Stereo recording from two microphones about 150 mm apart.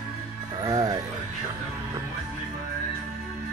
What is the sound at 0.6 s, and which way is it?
Music, 25° right (ahead or behind).